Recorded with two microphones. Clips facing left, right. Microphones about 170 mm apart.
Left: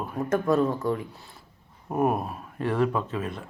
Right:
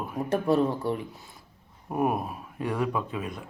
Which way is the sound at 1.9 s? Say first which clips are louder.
Left 2 dB; centre (ahead or behind).